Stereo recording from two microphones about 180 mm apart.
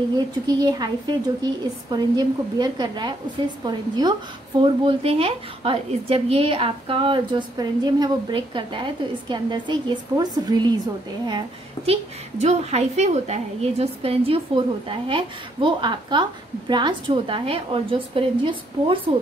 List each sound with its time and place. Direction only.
0.5 s a woman's voice: 25° right (ahead or behind)